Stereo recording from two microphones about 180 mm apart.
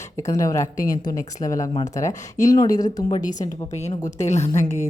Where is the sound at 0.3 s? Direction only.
20° left (ahead or behind).